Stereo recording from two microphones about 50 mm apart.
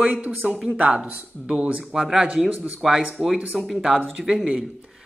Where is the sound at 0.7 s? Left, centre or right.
Centre.